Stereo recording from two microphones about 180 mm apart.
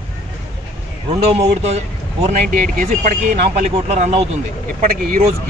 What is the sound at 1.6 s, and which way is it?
Speech, 40° right (ahead or behind).